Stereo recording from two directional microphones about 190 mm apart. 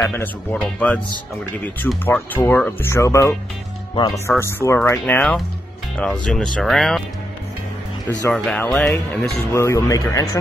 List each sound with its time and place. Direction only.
0.0 s speech: 10° left (ahead or behind)
4.4 s speech: 15° left (ahead or behind)
8.1 s speech: 5° left (ahead or behind)
9.5 s speech: 15° left (ahead or behind)